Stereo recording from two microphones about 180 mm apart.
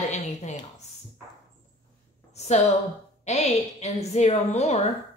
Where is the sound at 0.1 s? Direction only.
40° left (ahead or behind).